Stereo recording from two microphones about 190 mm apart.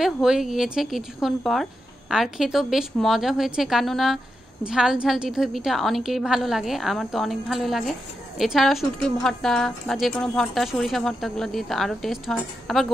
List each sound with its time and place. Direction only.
0.0 s a woman's voice: centre (ahead or behind)